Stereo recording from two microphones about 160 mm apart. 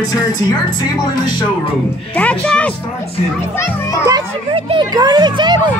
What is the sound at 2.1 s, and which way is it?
Speech, 10° left (ahead or behind).